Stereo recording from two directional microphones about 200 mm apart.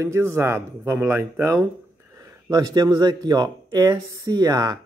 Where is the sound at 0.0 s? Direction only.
15° right (ahead or behind).